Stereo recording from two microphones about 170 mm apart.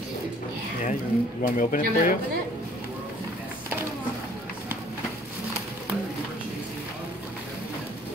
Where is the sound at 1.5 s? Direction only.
50° left (ahead or behind).